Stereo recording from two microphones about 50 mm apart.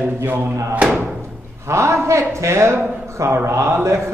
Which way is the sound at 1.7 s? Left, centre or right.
Right.